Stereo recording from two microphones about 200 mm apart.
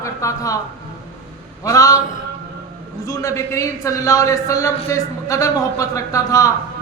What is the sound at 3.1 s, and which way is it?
A woman's voice, 15° left (ahead or behind).